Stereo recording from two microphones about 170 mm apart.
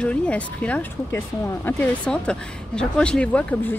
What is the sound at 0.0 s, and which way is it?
Speech, 5° left (ahead or behind).